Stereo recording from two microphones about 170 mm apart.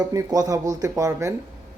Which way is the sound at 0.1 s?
20° right (ahead or behind).